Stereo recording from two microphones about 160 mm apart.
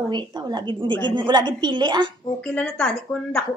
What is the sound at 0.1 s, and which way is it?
A woman's voice, 25° right (ahead or behind).